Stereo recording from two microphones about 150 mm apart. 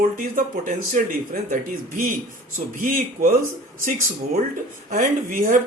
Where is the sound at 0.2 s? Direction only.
60° right (ahead or behind).